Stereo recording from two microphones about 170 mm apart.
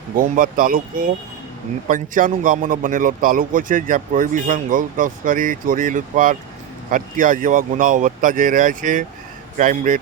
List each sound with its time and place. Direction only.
0.2 s a man's voice: 50° right (ahead or behind)